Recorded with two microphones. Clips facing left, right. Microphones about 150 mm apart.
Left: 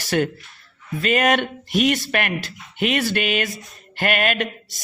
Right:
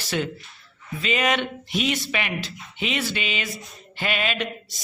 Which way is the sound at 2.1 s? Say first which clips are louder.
Left 4 dB; 55° left (ahead or behind).